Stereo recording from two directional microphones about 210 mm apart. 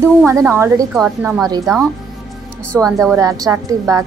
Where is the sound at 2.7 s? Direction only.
Centre (ahead or behind).